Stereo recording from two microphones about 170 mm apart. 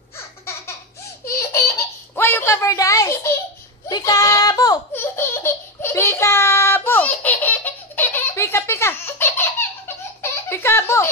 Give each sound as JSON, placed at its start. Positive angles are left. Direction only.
{"t": 1.3, "sound": "a sound", "side_deg": 15}
{"t": 3.9, "sound": "belly laugh", "side_deg": 20}
{"t": 10.5, "sound": "giggle", "side_deg": 15}